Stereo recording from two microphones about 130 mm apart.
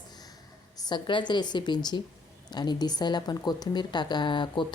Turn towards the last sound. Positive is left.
turn(degrees=35)  # may be behind; listen again after turning